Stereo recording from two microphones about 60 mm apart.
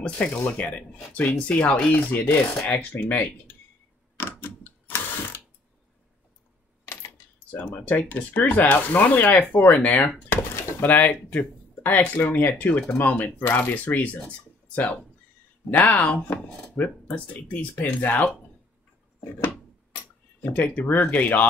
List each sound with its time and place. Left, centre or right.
0.0 s speech: centre
4.2 s mechanisms: left
7.5 s speech: left
20.5 s speech: left